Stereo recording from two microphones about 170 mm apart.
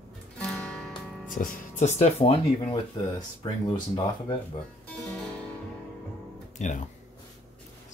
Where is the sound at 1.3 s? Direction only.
50° left (ahead or behind); by 3.6 s 30° left (ahead or behind).